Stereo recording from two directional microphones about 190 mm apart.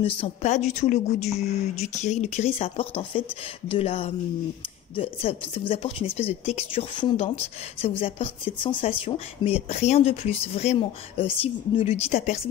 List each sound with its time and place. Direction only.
0.0 s speech: 35° left (ahead or behind)